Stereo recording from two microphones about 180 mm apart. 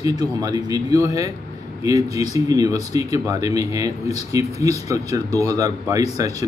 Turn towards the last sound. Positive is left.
turn(degrees=-20)  # may be behind; listen again after turning